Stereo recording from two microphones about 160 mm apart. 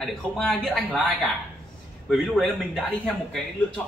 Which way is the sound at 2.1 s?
Centre (ahead or behind).